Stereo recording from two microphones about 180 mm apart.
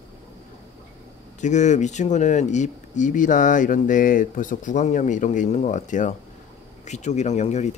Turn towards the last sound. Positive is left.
turn(degrees=40)  # may be behind; listen again after turning